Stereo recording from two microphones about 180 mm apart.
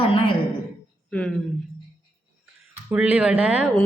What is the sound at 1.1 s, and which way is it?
Speech, 5° left (ahead or behind).